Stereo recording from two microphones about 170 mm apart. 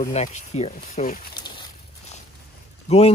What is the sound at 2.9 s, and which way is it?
Speech, 35° left (ahead or behind).